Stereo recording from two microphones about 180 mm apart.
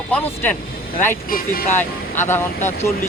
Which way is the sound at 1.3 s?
50° left (ahead or behind).